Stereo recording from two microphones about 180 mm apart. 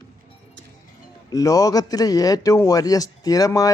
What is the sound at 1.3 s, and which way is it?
A man's voice, 20° left (ahead or behind).